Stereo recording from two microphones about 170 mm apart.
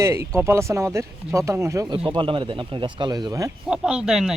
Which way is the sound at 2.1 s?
30° right (ahead or behind).